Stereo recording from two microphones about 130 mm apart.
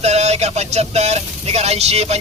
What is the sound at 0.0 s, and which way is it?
Speech, 55° right (ahead or behind).